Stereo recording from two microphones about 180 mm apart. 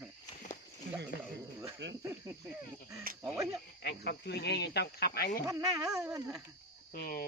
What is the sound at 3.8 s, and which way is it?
Speech, 65° left (ahead or behind).